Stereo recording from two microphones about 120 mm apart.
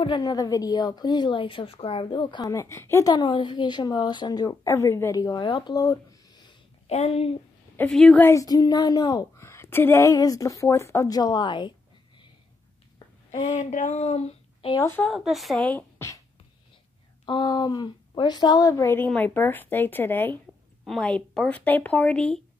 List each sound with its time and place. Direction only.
0.0 s a woman's voice: 40° left (ahead or behind)
2.4 s a woman's voice: 25° left (ahead or behind)
6.9 s speech: 60° left (ahead or behind)
7.9 s a woman's voice: 5° left (ahead or behind)
8.2 s a woman's voice: 25° left (ahead or behind)
9.4 s a woman's voice: 20° left (ahead or behind); by 11.7 s 40° left (ahead or behind)
13.5 s speech: 90° left; by 14.7 s 65° left (ahead or behind)
14.8 s speech: 15° left (ahead or behind)
15.1 s a woman's voice: centre (ahead or behind)
15.6 s speech: 15° left (ahead or behind)
17.3 s a woman's voice: 35° left (ahead or behind)
18.9 s speech: 10° left (ahead or behind)
20.8 s speech: 5° left (ahead or behind)